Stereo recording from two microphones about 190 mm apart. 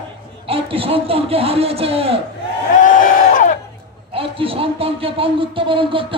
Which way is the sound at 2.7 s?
45° left (ahead or behind).